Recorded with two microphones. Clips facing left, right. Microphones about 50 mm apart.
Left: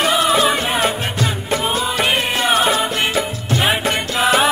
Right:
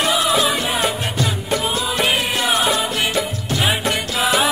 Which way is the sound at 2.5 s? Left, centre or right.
Centre.